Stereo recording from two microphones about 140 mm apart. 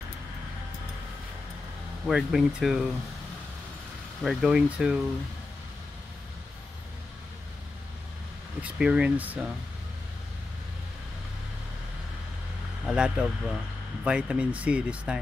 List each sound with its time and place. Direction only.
2.0 s speech: 5° right (ahead or behind)
4.2 s speech: centre (ahead or behind)
8.6 s speech: 5° right (ahead or behind)
12.8 s speech: 5° right (ahead or behind)